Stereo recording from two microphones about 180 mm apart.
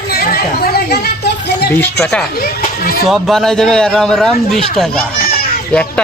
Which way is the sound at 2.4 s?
55° left (ahead or behind).